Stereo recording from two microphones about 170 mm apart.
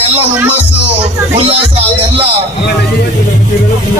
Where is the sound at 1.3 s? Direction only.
35° right (ahead or behind).